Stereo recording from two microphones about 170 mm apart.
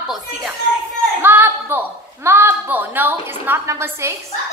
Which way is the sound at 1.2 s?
10° right (ahead or behind).